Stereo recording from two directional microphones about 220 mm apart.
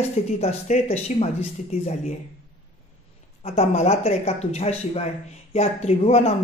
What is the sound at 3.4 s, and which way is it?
Speech, 30° left (ahead or behind).